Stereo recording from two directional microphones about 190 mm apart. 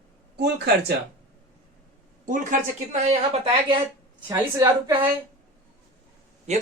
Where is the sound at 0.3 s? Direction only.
60° right (ahead or behind).